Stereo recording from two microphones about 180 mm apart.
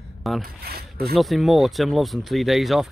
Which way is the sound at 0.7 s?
60° right (ahead or behind).